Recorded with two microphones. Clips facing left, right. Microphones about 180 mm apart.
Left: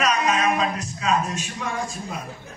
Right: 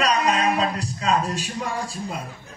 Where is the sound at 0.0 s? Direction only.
35° right (ahead or behind).